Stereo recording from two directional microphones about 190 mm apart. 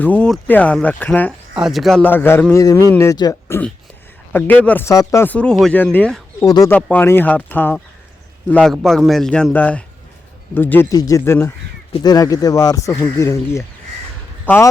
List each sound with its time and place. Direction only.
0.0 s speech: 5° left (ahead or behind)
6.4 s speech: 20° left (ahead or behind)
6.7 s a man's voice: 10° left (ahead or behind)